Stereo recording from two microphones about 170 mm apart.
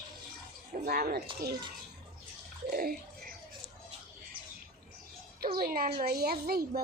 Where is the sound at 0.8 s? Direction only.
60° right (ahead or behind).